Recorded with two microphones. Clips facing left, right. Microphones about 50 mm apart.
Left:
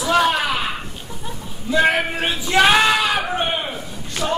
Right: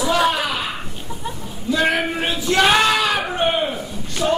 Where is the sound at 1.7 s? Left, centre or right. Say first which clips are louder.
Left 1 dB; centre.